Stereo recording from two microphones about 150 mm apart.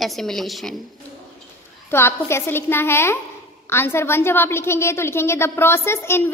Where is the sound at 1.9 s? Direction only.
15° left (ahead or behind).